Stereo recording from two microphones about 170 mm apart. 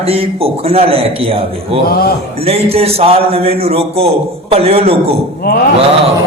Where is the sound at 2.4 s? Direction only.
35° right (ahead or behind).